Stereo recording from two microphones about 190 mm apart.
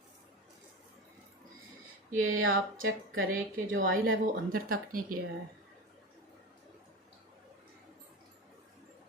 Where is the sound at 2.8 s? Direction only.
90° right.